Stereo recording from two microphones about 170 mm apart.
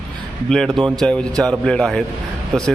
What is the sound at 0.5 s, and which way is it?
Speech, 5° left (ahead or behind).